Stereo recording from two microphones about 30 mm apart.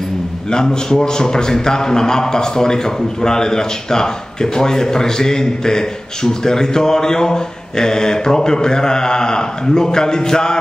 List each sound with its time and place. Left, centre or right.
0.5 s a man's voice: left